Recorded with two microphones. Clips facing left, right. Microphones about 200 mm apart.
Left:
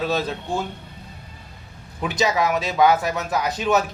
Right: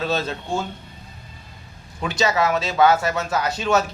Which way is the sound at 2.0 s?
15° left (ahead or behind).